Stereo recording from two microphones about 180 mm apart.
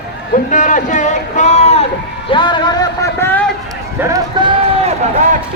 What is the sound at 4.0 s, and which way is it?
Speech, 15° right (ahead or behind).